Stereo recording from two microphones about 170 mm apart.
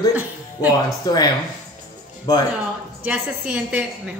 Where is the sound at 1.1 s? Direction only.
25° left (ahead or behind).